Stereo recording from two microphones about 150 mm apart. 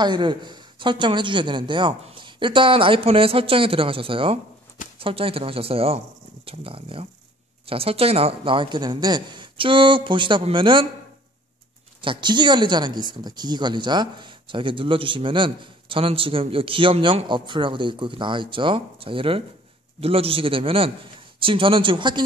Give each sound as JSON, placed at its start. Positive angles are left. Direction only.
{"t": 0.0, "sound": "a woman's voice", "side_deg": -30}
{"t": 12.0, "sound": "a woman's voice", "side_deg": -30}